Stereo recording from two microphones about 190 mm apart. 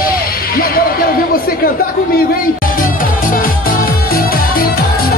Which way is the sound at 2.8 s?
45° left (ahead or behind).